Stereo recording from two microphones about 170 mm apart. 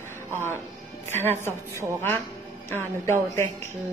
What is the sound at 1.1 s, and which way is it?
Speech, 15° left (ahead or behind).